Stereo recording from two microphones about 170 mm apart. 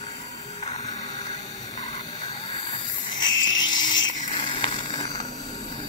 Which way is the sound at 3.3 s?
90° left.